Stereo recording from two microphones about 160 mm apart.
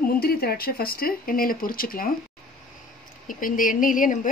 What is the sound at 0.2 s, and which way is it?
Speech, 75° left (ahead or behind).